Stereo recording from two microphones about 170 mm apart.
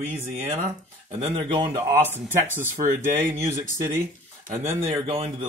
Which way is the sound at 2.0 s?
10° right (ahead or behind).